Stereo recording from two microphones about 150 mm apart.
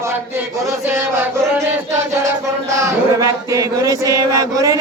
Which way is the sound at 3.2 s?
20° right (ahead or behind).